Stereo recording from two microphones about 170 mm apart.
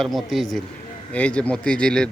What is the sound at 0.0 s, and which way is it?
A man's voice, centre (ahead or behind).